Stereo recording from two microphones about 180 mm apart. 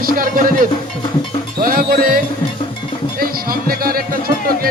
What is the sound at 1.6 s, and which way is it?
Music, 50° right (ahead or behind).